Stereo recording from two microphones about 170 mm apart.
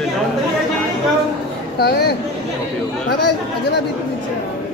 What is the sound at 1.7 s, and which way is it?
Speech, 70° left (ahead or behind).